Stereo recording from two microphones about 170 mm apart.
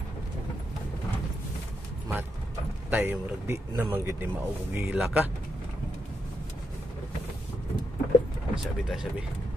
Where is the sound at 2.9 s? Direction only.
10° right (ahead or behind).